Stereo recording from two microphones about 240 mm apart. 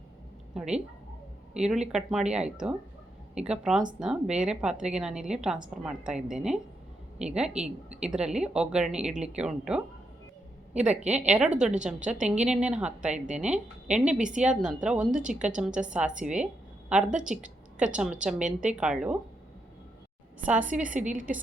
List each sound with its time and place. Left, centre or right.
0.5 s speech: centre
10.8 s a woman's voice: right
11.2 s speech: centre
11.9 s a woman's voice: right
12.5 s speech: centre
13.1 s a woman's voice: right
13.9 s speech: centre
18.4 s a woman's voice: right
18.8 s speech: centre
20.4 s speech: centre
21.0 s a woman's voice: right